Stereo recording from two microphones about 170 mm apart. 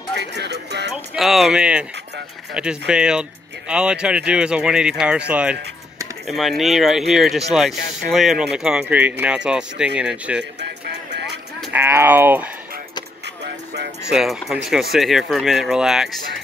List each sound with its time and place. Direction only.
0.1 s speech: 85° right
0.9 s speech: centre (ahead or behind)
10.6 s music: 80° right
11.7 s speech: 15° right (ahead or behind)
14.0 s speech: 5° right (ahead or behind)